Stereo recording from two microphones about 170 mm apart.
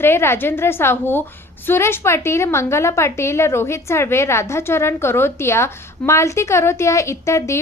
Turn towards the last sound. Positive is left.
turn(degrees=15)  # may be behind; listen again after turning